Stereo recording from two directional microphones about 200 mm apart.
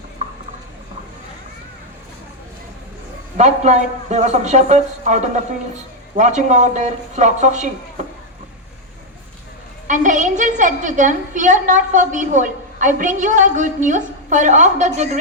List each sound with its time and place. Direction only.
0.2 s a sound: 35° right (ahead or behind)
3.3 s a woman's voice: 35° right (ahead or behind)
9.8 s a woman's voice: 40° right (ahead or behind)